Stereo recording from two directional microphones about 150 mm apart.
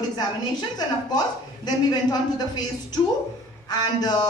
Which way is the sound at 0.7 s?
25° left (ahead or behind).